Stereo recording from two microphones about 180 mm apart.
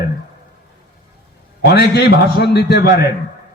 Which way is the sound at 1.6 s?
70° left (ahead or behind).